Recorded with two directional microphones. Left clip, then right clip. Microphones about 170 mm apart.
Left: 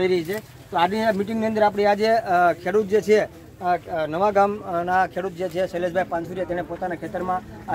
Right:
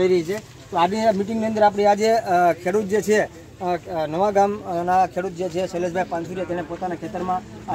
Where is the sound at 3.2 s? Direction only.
50° right (ahead or behind).